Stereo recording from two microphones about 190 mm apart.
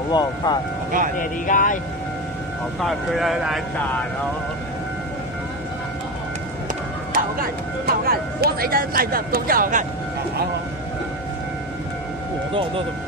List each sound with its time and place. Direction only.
0.1 s speech: 20° left (ahead or behind)
1.1 s speech: 45° left (ahead or behind)
2.8 s speech: centre (ahead or behind)
7.2 s speech: 50° right (ahead or behind)